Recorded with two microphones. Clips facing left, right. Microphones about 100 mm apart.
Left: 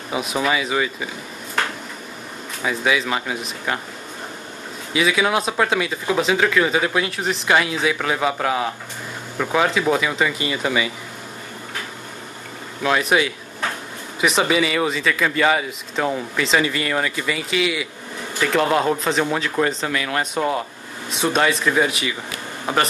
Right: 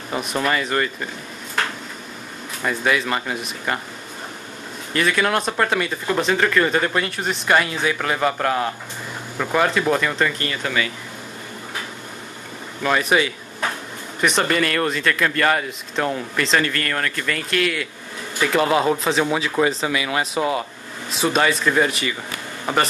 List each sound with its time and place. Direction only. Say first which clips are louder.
0.1 s speech: left 1 dB; 5° left (ahead or behind)
2.6 s speech: even; centre (ahead or behind)
4.9 s speech: left 1 dB; 5° left (ahead or behind)
12.8 s speech: even; centre (ahead or behind)